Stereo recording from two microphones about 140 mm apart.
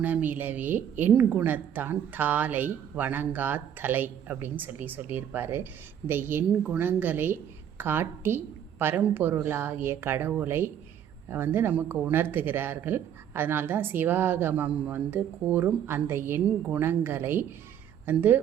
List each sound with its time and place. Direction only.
0.0 s speech: 15° right (ahead or behind)